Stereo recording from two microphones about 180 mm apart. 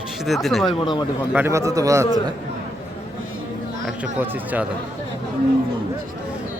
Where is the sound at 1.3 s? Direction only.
15° right (ahead or behind).